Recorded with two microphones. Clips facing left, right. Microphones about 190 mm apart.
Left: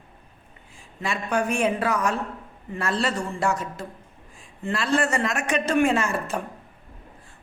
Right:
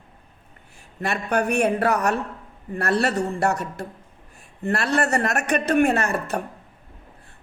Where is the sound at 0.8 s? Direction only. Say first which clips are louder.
Right 3 dB; 65° right (ahead or behind).